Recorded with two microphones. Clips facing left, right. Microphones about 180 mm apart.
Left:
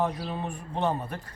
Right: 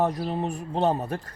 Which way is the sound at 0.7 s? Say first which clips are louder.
Right 4 dB; 35° right (ahead or behind).